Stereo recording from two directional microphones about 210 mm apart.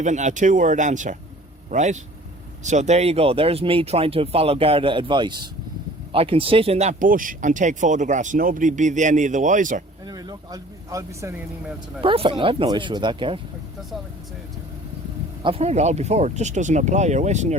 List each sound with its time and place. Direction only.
0.0 s speech: 35° right (ahead or behind)
10.1 s speech: 20° right (ahead or behind)
12.0 s speech: 25° right (ahead or behind)
15.4 s speech: 30° right (ahead or behind)